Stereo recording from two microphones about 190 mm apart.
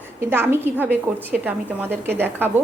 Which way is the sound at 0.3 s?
10° right (ahead or behind).